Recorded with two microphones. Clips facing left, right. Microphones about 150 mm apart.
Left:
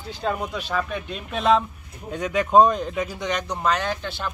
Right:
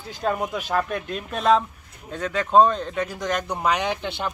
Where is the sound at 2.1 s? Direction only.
10° left (ahead or behind).